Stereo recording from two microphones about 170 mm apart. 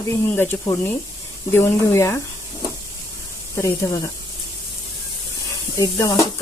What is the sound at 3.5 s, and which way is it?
Speech, 15° left (ahead or behind).